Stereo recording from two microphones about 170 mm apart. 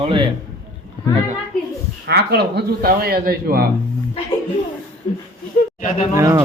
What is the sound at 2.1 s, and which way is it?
Speech, 70° right (ahead or behind).